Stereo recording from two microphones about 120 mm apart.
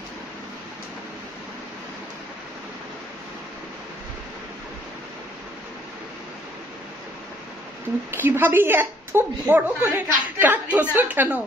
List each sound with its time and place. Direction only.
8.1 s a woman's voice: 20° right (ahead or behind)